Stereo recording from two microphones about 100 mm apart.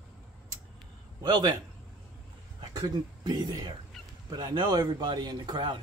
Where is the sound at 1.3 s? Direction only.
45° right (ahead or behind).